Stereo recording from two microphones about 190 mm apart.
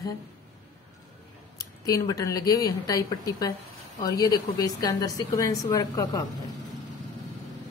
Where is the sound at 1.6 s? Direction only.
20° left (ahead or behind).